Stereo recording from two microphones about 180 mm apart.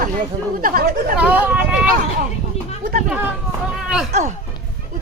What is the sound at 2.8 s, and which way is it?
Speech, 45° right (ahead or behind).